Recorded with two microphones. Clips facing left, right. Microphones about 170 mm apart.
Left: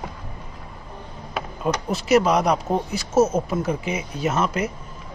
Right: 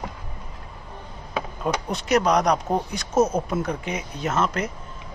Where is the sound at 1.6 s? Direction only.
5° left (ahead or behind).